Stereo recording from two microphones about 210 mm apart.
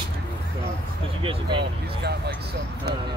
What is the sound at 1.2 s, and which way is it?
Speech, 25° right (ahead or behind).